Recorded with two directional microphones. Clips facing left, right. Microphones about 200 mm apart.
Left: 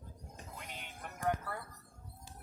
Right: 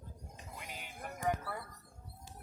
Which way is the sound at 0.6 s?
5° right (ahead or behind).